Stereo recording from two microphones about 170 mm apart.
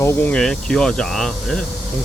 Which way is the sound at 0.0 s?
15° left (ahead or behind).